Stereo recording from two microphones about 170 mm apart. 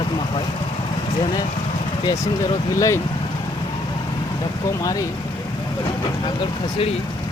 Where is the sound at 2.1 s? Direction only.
25° left (ahead or behind).